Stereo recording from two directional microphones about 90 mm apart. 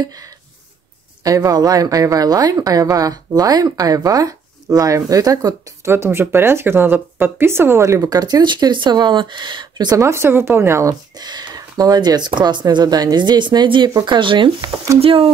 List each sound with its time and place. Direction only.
0.0 s speech: 45° right (ahead or behind)
5.9 s speech: 30° right (ahead or behind); by 9.9 s 55° right (ahead or behind)
9.9 s speech: 30° right (ahead or behind)
11.1 s speech: 50° right (ahead or behind)
15.0 s speech: 90° right